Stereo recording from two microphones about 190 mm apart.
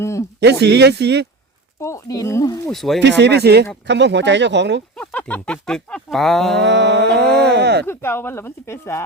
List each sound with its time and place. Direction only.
0.0 s speech: 15° left (ahead or behind)
0.3 s speech: 60° right (ahead or behind)
1.8 s speech: 15° left (ahead or behind)
2.6 s speech: centre (ahead or behind)
3.0 s speech: 65° right (ahead or behind)
4.9 s speech: 5° left (ahead or behind)
6.6 s speech: 65° right (ahead or behind)
7.9 s speech: 10° left (ahead or behind)